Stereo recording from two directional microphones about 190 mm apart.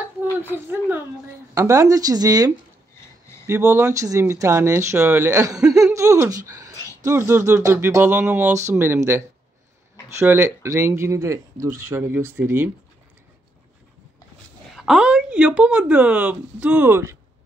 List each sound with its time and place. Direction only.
0.2 s a woman's voice: 10° right (ahead or behind)
10.2 s speech: 15° right (ahead or behind)
14.8 s speech: 5° right (ahead or behind)